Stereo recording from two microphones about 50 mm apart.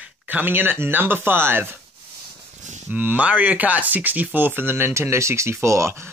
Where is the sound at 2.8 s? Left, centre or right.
Right.